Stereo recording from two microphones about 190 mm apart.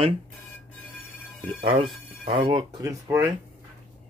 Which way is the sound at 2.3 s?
25° right (ahead or behind).